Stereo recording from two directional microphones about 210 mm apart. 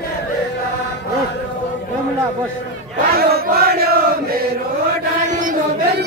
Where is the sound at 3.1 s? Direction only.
45° right (ahead or behind).